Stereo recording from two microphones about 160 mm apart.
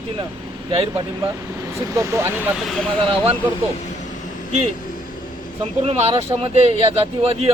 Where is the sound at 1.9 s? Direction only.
20° right (ahead or behind).